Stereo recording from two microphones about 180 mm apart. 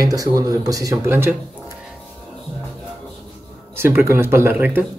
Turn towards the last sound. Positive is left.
turn(degrees=-10)  # may be behind; listen again after turning